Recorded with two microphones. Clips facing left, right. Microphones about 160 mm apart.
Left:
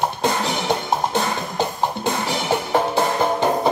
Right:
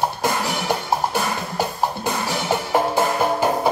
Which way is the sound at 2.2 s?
15° left (ahead or behind).